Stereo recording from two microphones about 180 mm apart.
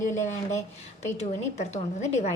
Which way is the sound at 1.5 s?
40° left (ahead or behind).